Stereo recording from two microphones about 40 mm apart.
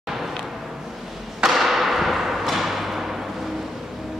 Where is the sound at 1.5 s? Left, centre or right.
Centre.